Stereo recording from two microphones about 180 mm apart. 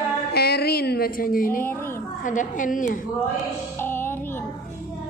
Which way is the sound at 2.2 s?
45° left (ahead or behind).